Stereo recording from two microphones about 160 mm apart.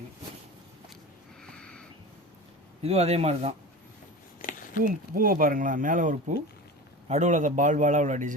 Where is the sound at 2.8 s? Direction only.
40° right (ahead or behind).